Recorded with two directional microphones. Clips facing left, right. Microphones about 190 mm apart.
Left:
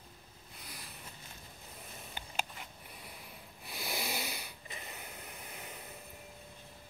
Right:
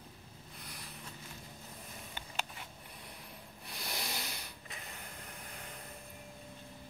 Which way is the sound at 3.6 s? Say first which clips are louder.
Left 3 dB; 5° left (ahead or behind).